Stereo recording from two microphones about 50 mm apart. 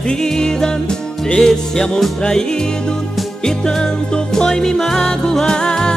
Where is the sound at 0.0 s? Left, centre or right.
Centre.